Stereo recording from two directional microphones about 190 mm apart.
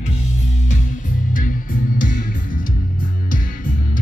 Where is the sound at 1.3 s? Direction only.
45° left (ahead or behind).